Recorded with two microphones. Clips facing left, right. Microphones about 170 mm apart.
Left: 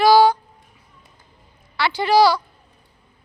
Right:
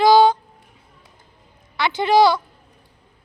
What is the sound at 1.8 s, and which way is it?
Speech, 20° right (ahead or behind).